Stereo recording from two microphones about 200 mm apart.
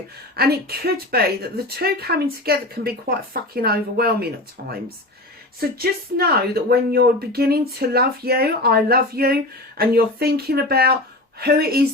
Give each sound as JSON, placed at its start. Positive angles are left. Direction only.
{"t": 0.3, "sound": "speech", "side_deg": -50}